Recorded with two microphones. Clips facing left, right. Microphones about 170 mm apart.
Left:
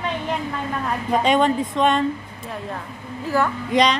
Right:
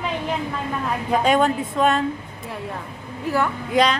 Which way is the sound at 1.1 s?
5° right (ahead or behind).